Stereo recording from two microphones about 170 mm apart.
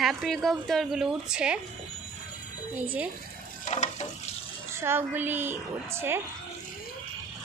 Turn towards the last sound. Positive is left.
turn(degrees=-15)  # may be behind; listen again after turning